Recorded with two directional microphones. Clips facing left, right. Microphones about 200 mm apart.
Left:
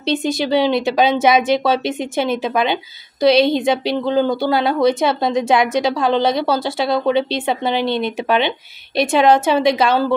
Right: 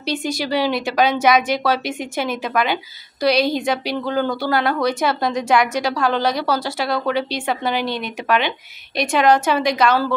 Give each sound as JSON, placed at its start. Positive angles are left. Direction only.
{"t": 0.0, "sound": "a woman's voice", "side_deg": 25}